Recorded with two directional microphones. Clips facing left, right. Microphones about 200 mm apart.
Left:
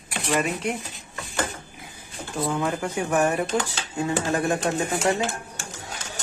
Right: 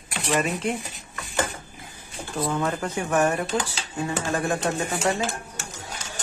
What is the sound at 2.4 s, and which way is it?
Speech, 10° left (ahead or behind).